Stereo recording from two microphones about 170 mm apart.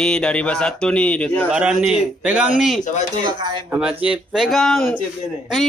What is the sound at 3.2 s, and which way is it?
Speech, 25° right (ahead or behind).